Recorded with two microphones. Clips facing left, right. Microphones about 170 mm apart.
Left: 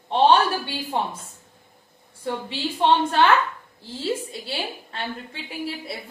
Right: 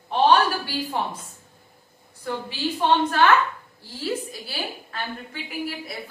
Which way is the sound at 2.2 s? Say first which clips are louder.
Even; 30° left (ahead or behind).